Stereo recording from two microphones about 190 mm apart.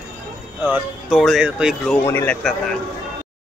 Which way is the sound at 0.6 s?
5° right (ahead or behind).